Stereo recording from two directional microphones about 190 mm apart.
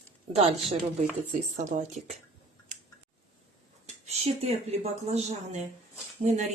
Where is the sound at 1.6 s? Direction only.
40° right (ahead or behind).